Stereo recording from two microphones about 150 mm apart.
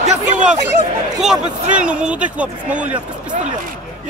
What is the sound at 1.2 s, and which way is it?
A man's voice, 5° right (ahead or behind).